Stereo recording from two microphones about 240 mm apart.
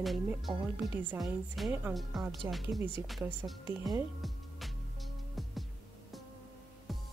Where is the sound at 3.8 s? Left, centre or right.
Centre.